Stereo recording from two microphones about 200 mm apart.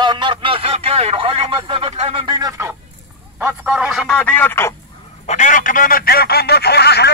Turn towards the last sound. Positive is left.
turn(degrees=55)  # may be behind; listen again after turning